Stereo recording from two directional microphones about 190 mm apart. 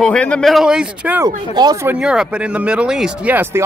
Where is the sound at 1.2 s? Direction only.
20° right (ahead or behind).